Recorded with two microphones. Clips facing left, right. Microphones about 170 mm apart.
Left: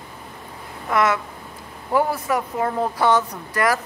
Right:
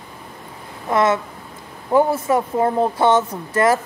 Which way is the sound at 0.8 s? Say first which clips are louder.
Right 3 dB; 25° right (ahead or behind).